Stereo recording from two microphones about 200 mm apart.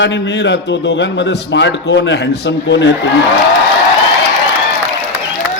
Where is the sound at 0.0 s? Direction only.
65° left (ahead or behind).